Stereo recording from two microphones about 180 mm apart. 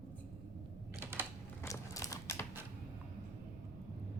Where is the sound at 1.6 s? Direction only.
20° left (ahead or behind).